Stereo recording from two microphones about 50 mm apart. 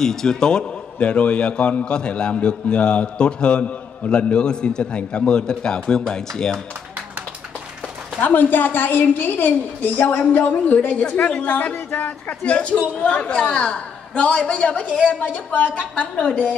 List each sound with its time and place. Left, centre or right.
0.0 s a man's voice: centre
0.9 s a man's voice: left
8.2 s a woman's voice: left